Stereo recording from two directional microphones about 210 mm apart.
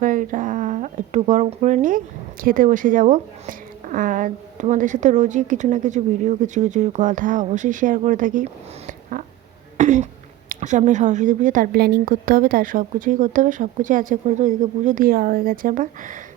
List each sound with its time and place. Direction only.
0.0 s a woman's voice: 40° right (ahead or behind)
8.9 s a sound: 40° right (ahead or behind)
9.7 s throat clearing: 35° right (ahead or behind)
10.5 s a woman's voice: 35° right (ahead or behind)